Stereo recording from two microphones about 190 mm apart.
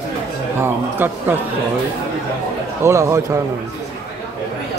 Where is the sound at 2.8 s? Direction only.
15° right (ahead or behind).